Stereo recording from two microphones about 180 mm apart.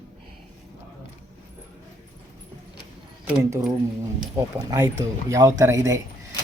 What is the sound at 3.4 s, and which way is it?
Speech, 15° right (ahead or behind).